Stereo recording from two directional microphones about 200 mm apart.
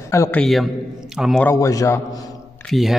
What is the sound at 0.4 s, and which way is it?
Speech, centre (ahead or behind).